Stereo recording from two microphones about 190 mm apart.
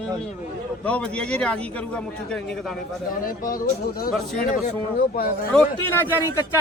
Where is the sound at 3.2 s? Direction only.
50° left (ahead or behind).